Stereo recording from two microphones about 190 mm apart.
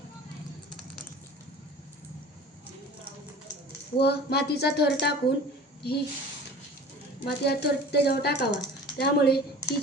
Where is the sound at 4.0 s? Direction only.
60° left (ahead or behind).